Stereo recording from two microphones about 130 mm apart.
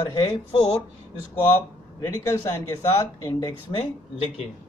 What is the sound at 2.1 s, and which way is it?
Speech, 25° left (ahead or behind).